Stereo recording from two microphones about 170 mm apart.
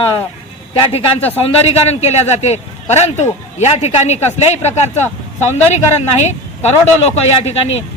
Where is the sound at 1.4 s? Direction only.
35° left (ahead or behind).